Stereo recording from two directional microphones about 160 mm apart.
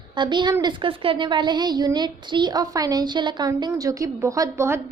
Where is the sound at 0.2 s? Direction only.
30° right (ahead or behind).